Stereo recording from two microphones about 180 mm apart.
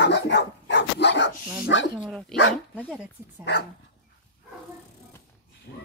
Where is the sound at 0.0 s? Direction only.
70° left (ahead or behind).